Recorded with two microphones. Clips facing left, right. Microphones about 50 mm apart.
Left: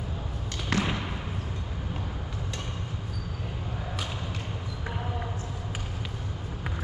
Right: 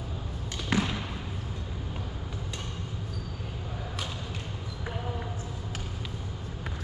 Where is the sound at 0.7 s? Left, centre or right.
Centre.